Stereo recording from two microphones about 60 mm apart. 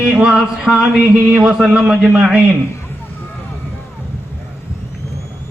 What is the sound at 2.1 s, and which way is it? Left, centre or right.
Speech, right.